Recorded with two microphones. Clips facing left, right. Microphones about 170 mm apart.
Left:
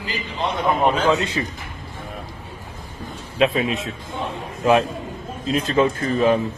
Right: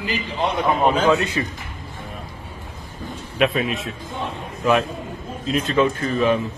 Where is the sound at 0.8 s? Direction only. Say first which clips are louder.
Right 1 dB; centre (ahead or behind).